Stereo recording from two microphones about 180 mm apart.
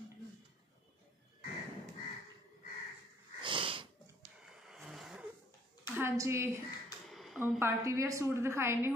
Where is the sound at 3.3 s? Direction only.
25° right (ahead or behind).